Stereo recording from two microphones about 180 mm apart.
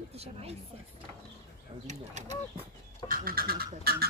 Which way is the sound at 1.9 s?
40° right (ahead or behind).